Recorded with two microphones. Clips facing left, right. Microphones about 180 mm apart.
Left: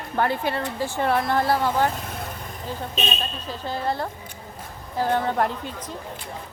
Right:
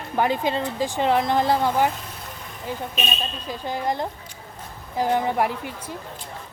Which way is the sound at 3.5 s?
15° right (ahead or behind).